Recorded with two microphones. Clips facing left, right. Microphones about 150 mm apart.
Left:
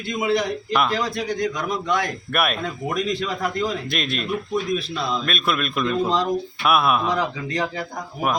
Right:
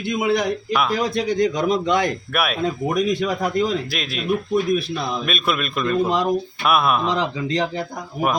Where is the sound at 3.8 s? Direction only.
Centre (ahead or behind).